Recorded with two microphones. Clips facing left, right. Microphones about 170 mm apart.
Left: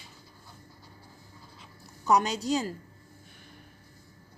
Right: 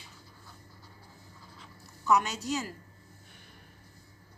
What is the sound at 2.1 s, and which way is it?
Speech, 35° left (ahead or behind).